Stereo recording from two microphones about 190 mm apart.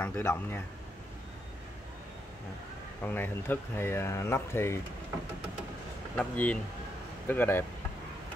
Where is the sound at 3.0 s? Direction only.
10° left (ahead or behind).